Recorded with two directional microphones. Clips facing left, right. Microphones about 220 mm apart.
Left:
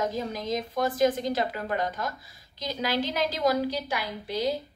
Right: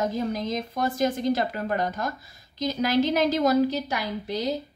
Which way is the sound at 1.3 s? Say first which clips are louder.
Right 2 dB; 45° right (ahead or behind).